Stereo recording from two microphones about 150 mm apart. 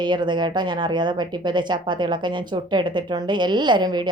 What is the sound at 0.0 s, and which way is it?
A woman's voice, 30° right (ahead or behind).